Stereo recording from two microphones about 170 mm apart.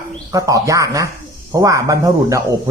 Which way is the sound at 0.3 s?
20° right (ahead or behind).